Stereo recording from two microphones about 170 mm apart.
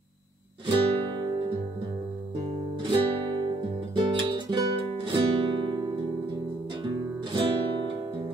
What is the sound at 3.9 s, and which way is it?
Guitar, 25° right (ahead or behind).